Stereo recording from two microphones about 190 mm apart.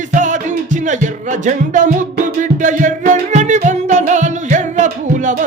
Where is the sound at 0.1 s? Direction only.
40° right (ahead or behind).